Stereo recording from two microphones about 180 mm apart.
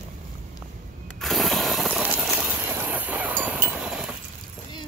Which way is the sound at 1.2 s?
Centre (ahead or behind).